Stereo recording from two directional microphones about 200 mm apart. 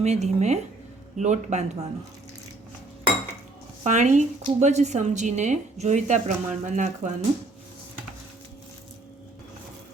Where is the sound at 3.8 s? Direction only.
35° right (ahead or behind).